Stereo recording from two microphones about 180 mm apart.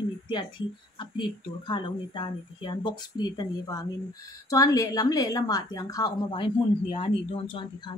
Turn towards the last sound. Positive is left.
turn(degrees=25)  # may be behind; listen again after turning